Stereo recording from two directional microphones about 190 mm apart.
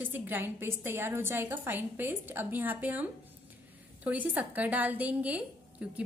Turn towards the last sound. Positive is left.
turn(degrees=-10)  # may be behind; listen again after turning